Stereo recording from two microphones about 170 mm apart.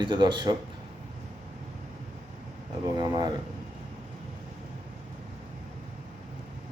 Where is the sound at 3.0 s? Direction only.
25° right (ahead or behind).